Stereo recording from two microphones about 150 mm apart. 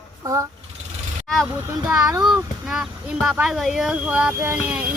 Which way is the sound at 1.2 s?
5° left (ahead or behind).